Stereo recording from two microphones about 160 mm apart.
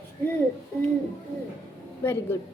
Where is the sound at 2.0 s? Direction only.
15° left (ahead or behind).